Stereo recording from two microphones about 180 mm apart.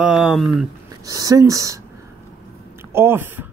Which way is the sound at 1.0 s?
20° right (ahead or behind).